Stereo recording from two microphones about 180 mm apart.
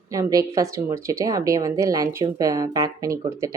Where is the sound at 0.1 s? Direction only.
20° right (ahead or behind).